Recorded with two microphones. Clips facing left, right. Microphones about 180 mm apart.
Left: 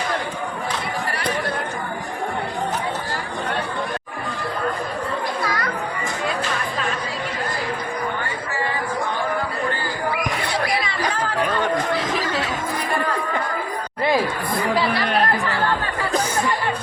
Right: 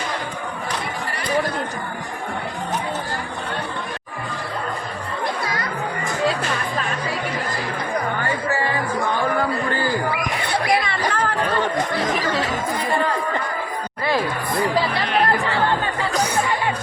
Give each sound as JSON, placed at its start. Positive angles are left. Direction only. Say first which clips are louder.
{"t": 10.5, "sound": "chatter", "louder": "right 7 dB", "side_deg": -60}